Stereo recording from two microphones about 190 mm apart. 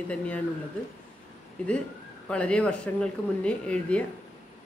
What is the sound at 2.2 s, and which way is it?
Speech, 5° left (ahead or behind).